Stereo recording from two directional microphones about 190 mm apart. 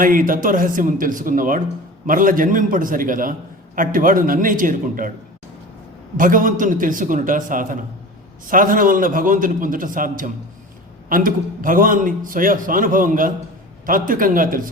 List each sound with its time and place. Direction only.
0.0 s a man's voice: 45° right (ahead or behind)
6.1 s a man's voice: 45° right (ahead or behind)